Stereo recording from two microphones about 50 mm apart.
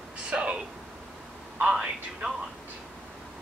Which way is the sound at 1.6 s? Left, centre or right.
Centre.